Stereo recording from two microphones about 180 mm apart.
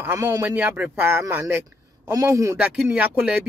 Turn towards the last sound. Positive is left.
turn(degrees=-5)  # may be behind; listen again after turning